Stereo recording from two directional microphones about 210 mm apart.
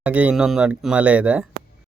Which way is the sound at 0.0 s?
5° right (ahead or behind).